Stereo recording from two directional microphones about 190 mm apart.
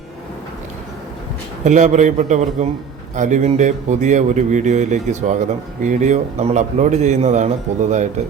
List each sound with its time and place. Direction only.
1.6 s a man's voice: 40° right (ahead or behind)